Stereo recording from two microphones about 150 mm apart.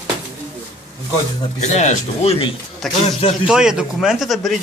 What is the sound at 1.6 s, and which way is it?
Speech, 50° left (ahead or behind).